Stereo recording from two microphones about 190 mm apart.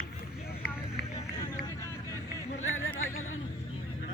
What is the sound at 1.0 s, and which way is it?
Run, 60° left (ahead or behind).